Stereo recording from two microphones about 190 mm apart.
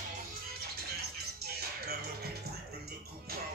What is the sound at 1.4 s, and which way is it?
Music, 55° right (ahead or behind).